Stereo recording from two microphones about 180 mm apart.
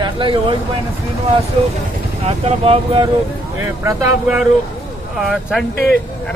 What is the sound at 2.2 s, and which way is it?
Speech, 35° right (ahead or behind).